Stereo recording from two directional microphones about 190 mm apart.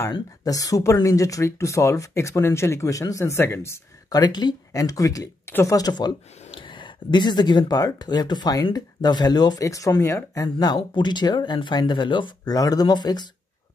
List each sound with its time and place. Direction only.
0.1 s speech: 20° left (ahead or behind)